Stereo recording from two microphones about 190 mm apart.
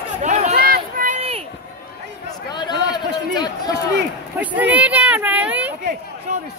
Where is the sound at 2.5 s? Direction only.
25° left (ahead or behind).